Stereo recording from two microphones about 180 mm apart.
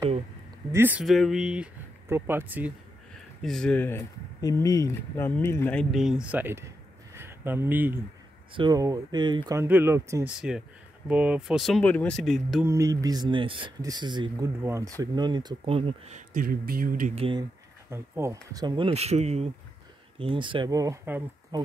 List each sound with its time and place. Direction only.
0.7 s speech: 10° right (ahead or behind)
1.0 s speech: centre (ahead or behind)
3.4 s speech: 5° left (ahead or behind)
8.5 s speech: 20° right (ahead or behind)
9.6 s speech: 10° right (ahead or behind)
12.6 s speech: 20° right (ahead or behind)
16.3 s speech: 55° right (ahead or behind)
17.1 s speech: 30° right (ahead or behind)
17.8 s speech: 15° right (ahead or behind)